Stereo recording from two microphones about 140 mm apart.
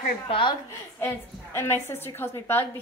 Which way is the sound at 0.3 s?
35° left (ahead or behind).